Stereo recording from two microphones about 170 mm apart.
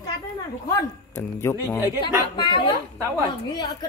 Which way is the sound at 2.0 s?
30° left (ahead or behind).